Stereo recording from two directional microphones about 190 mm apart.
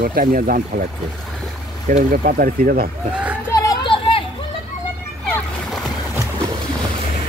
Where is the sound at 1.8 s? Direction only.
45° right (ahead or behind).